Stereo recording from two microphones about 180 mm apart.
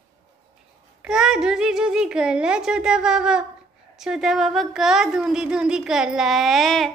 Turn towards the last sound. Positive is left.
turn(degrees=0)  # may be behind; listen again after turning